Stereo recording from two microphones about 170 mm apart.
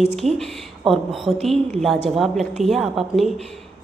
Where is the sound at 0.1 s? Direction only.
Centre (ahead or behind).